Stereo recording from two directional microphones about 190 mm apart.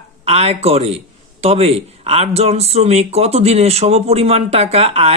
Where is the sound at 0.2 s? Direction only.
35° right (ahead or behind).